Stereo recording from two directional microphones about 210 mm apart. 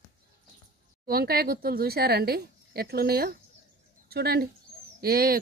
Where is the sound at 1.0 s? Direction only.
45° right (ahead or behind).